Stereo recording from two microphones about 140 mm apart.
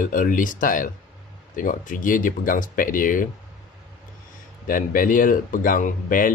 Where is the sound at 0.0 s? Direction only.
70° left (ahead or behind).